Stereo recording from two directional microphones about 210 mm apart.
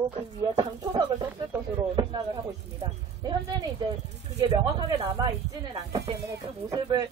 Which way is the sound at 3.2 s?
20° right (ahead or behind).